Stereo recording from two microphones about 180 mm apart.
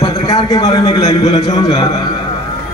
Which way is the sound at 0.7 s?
35° left (ahead or behind).